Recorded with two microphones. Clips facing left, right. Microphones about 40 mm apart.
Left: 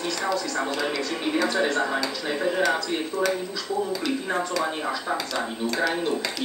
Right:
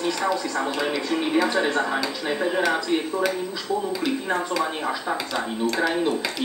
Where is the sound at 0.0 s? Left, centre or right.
Centre.